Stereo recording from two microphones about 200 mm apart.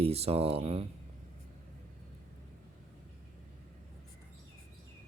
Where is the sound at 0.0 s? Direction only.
30° right (ahead or behind).